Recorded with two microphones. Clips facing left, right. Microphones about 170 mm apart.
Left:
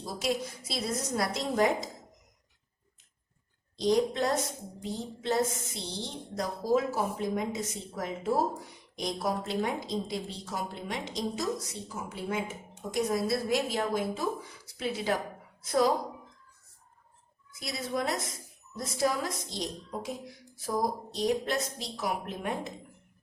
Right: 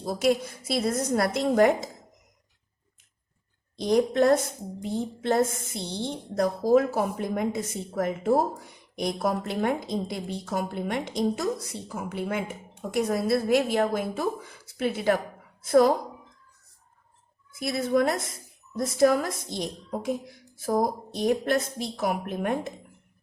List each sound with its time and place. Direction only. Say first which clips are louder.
0.0 s a woman's voice: right 7 dB; 55° right (ahead or behind)
3.8 s a woman's voice: right 4 dB; 55° right (ahead or behind)
17.5 s a woman's voice: right 9 dB; 55° right (ahead or behind)